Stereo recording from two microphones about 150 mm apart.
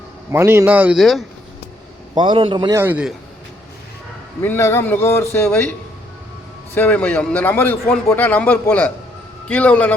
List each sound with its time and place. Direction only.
0.3 s a man's voice: 15° right (ahead or behind); by 1.2 s centre (ahead or behind)
2.1 s a man's voice: 35° right (ahead or behind)
2.7 s a man's voice: 10° right (ahead or behind)
4.4 s a man's voice: 15° left (ahead or behind)
6.7 s a man's voice: 10° left (ahead or behind)